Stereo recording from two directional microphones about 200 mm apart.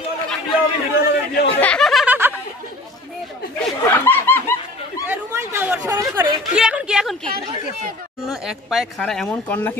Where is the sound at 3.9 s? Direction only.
10° left (ahead or behind).